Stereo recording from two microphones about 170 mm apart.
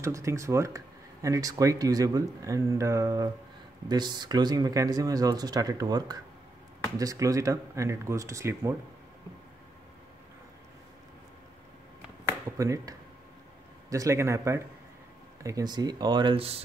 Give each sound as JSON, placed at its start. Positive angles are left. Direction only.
{"t": 0.0, "sound": "speech", "side_deg": -15}
{"t": 12.5, "sound": "speech", "side_deg": -20}